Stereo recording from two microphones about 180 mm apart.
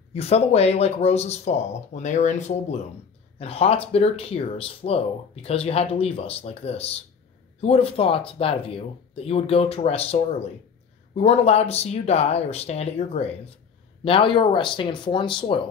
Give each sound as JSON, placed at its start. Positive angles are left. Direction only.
{"t": 0.1, "sound": "speech", "side_deg": 35}